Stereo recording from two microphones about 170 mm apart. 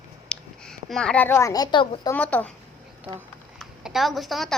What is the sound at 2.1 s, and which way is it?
Speech, 10° left (ahead or behind).